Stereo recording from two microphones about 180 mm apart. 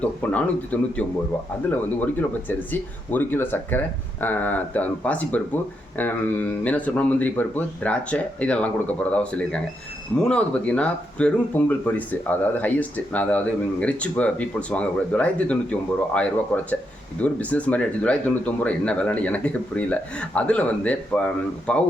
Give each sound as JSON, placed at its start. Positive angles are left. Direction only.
{"t": 0.0, "sound": "speech", "side_deg": 5}